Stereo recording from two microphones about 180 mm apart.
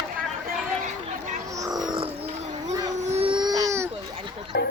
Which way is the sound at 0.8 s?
45° right (ahead or behind).